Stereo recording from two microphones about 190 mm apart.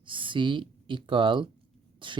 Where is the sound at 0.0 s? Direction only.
25° right (ahead or behind).